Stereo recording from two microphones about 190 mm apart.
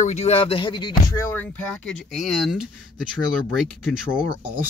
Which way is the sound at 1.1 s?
10° left (ahead or behind).